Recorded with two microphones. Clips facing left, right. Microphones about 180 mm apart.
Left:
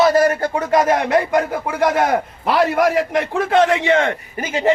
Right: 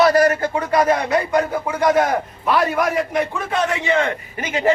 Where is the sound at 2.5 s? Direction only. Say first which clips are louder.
Left 3 dB; 85° left.